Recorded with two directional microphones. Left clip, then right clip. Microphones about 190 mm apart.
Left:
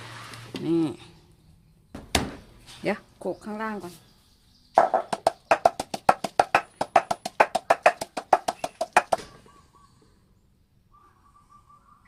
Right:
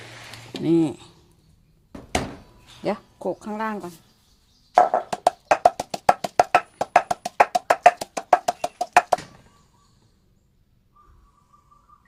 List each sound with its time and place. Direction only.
0.5 s speech: 30° right (ahead or behind)
3.2 s speech: 20° right (ahead or behind)
4.7 s music: 30° right (ahead or behind)